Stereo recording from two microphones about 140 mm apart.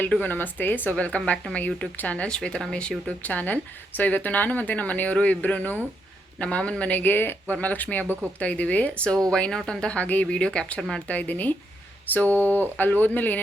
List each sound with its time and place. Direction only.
0.0 s speech: 10° left (ahead or behind)
8.0 s speech: 15° right (ahead or behind)
8.4 s speech: 10° left (ahead or behind)